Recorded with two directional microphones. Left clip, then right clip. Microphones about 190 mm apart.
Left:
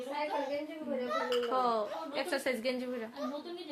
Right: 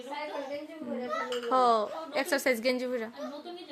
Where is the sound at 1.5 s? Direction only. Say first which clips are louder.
Right 6 dB; 40° right (ahead or behind).